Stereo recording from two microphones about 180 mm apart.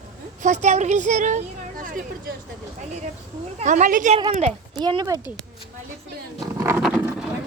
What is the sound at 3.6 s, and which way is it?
Speech, 45° right (ahead or behind).